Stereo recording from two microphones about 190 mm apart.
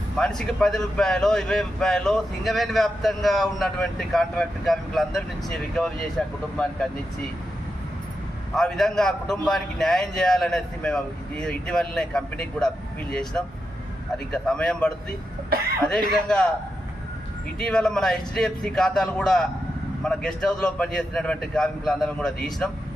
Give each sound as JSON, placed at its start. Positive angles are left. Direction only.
{"t": 0.2, "sound": "speech", "side_deg": 5}
{"t": 8.5, "sound": "speech", "side_deg": 0}
{"t": 17.6, "sound": "speech", "side_deg": 5}